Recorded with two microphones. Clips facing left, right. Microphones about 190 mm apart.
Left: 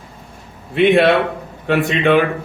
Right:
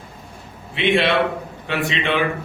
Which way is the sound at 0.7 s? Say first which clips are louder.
Left 6 dB; 50° left (ahead or behind).